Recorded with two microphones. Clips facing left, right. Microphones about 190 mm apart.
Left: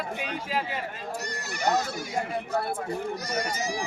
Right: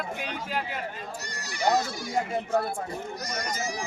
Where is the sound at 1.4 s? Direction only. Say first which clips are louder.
Right 2 dB; 50° left (ahead or behind).